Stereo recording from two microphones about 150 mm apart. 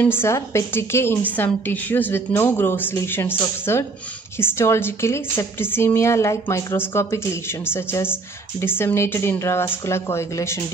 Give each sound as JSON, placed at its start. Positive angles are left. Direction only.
{"t": 0.0, "sound": "a woman's voice", "side_deg": 15}